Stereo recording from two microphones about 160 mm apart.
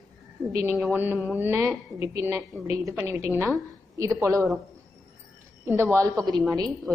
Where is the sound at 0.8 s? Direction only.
10° right (ahead or behind).